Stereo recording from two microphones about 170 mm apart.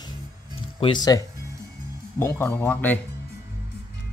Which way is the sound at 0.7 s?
30° left (ahead or behind).